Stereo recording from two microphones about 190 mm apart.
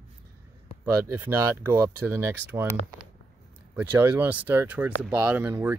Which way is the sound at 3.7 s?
10° right (ahead or behind).